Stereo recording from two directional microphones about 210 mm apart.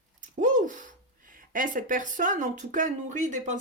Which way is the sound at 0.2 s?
35° right (ahead or behind).